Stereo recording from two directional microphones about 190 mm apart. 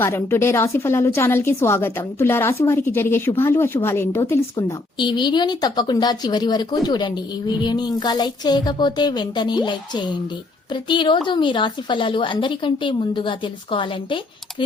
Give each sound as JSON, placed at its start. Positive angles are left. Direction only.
{"t": 0.0, "sound": "speech", "side_deg": 15}